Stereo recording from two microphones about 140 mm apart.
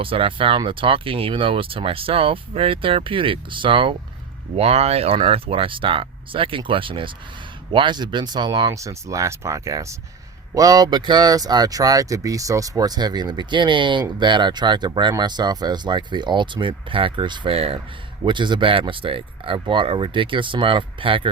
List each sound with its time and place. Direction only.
0.0 s speech: 40° right (ahead or behind)